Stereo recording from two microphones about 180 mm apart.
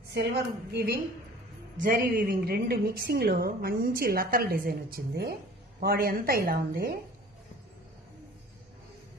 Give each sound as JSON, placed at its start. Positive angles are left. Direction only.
{"t": 0.7, "sound": "a woman's voice", "side_deg": -60}
{"t": 4.9, "sound": "a woman's voice", "side_deg": -65}